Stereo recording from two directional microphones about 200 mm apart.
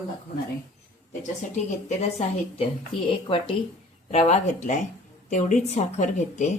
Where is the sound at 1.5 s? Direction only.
35° left (ahead or behind).